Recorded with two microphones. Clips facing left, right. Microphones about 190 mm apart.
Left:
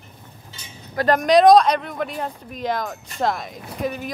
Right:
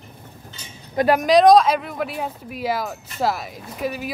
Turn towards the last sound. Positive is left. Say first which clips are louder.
# even
turn(degrees=-5)  # may be behind; listen again after turning